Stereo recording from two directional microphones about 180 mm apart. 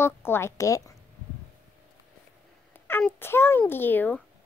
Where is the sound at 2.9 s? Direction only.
10° left (ahead or behind).